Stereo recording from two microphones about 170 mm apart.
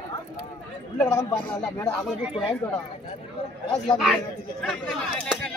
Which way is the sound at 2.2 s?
5° right (ahead or behind).